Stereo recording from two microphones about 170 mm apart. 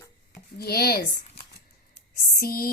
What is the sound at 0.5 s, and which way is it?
Speech, 65° left (ahead or behind).